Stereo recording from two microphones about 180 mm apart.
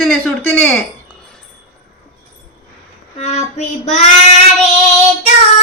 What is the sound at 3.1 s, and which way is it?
Child singing, 40° left (ahead or behind).